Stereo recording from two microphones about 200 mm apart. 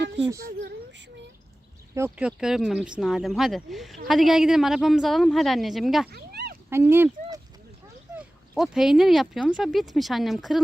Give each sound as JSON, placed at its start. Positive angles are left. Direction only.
{"t": 0.3, "sound": "speech", "side_deg": -50}
{"t": 2.0, "sound": "speech", "side_deg": -5}
{"t": 6.1, "sound": "a sound", "side_deg": -55}
{"t": 6.7, "sound": "speech", "side_deg": -10}
{"t": 8.1, "sound": "speech", "side_deg": -5}